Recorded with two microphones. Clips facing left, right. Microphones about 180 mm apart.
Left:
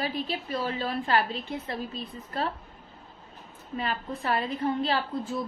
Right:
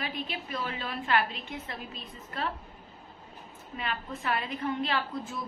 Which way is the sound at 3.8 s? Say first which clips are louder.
Left 3 dB; 35° left (ahead or behind).